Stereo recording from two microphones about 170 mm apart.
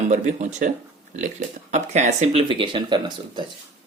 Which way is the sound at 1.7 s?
45° right (ahead or behind).